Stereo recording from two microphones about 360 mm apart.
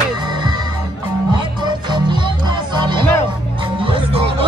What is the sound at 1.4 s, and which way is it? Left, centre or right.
Music, centre.